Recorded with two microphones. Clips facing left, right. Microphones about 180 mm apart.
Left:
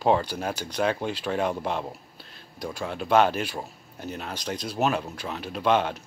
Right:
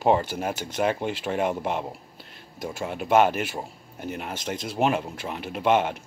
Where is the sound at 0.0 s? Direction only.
15° right (ahead or behind).